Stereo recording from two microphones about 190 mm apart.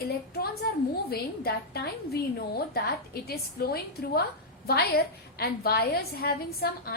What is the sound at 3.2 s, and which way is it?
A woman's voice, 55° left (ahead or behind).